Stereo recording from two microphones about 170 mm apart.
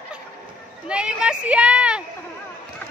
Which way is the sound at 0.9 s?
5° right (ahead or behind).